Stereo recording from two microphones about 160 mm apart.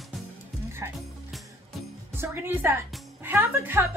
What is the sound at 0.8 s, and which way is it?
Music, 20° right (ahead or behind).